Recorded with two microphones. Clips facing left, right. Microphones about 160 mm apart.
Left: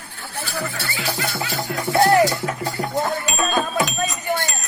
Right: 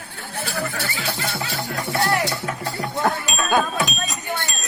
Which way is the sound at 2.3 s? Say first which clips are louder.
Left 2 dB; 5° left (ahead or behind).